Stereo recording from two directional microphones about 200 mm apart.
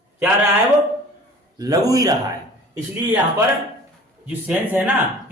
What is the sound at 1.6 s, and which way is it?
Speech, 20° right (ahead or behind).